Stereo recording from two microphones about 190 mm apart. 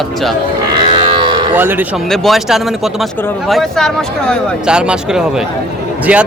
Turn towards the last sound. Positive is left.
turn(degrees=-5)  # may be behind; listen again after turning